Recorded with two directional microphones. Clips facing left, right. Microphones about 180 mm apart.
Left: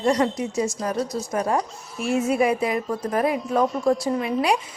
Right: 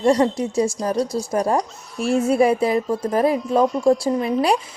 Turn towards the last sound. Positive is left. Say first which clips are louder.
# right 3 dB
turn(degrees=-35)  # may be behind; listen again after turning